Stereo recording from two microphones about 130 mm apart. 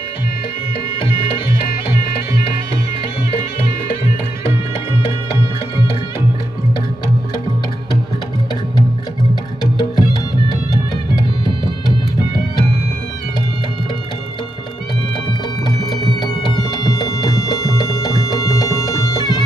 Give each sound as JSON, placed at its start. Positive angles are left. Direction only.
{"t": 9.3, "sound": "music", "side_deg": 30}
{"t": 15.6, "sound": "music", "side_deg": 30}